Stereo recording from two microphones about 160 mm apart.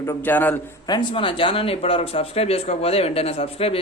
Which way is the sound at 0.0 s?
15° left (ahead or behind).